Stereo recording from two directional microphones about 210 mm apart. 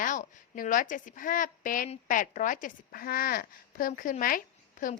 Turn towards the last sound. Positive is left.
turn(degrees=40)  # may be behind; listen again after turning